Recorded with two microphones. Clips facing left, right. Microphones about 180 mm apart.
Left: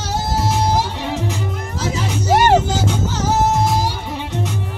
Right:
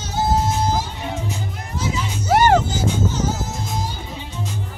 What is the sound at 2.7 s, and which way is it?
Music, 80° left.